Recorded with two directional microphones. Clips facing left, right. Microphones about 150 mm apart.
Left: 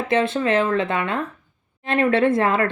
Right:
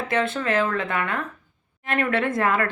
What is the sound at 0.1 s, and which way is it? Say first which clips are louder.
Speech: left 4 dB; 25° left (ahead or behind).